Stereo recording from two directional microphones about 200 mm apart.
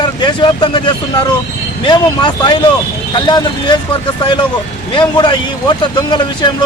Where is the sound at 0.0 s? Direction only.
20° left (ahead or behind).